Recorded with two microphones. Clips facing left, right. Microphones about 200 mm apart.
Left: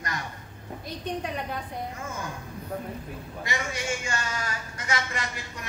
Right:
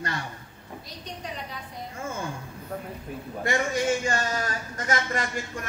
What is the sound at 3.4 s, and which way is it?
A man's voice, 45° right (ahead or behind).